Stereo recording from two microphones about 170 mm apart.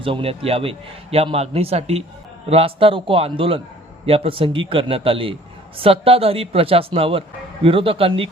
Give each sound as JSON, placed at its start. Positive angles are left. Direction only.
{"t": 0.0, "sound": "a man's voice", "side_deg": -35}